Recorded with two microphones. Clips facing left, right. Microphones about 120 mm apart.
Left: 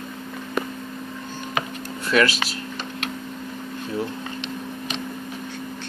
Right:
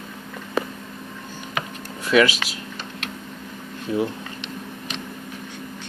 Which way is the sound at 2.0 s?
10° right (ahead or behind).